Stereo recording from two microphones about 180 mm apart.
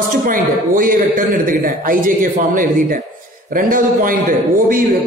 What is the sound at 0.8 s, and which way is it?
A woman's voice, 50° right (ahead or behind).